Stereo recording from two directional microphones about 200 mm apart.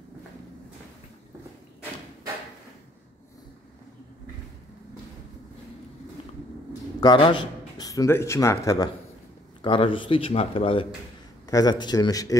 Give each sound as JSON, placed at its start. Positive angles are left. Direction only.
{"t": 7.0, "sound": "a man's voice", "side_deg": 25}